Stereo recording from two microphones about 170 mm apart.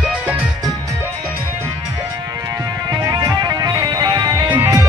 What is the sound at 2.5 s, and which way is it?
Music, 20° right (ahead or behind).